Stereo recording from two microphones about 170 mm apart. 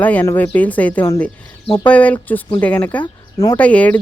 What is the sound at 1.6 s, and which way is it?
Speech, 25° left (ahead or behind).